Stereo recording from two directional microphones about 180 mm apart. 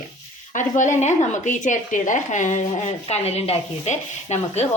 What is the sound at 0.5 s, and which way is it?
Speech, 45° left (ahead or behind).